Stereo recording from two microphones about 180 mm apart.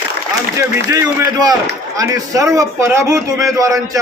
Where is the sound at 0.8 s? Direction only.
20° right (ahead or behind).